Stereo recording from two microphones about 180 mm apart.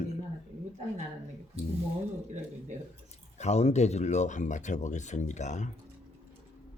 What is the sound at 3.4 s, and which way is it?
Speech, 35° left (ahead or behind).